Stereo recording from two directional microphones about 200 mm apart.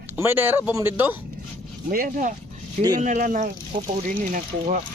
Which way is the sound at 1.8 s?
45° right (ahead or behind).